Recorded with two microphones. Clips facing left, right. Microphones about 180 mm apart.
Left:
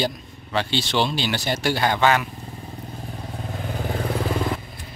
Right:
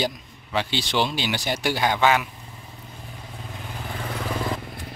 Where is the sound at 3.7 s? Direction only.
45° left (ahead or behind).